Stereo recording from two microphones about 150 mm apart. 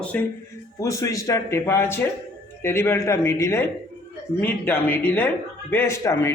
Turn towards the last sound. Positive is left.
turn(degrees=20)  # may be behind; listen again after turning